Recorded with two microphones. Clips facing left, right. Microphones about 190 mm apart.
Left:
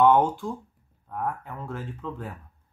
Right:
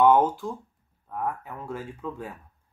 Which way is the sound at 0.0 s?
5° right (ahead or behind).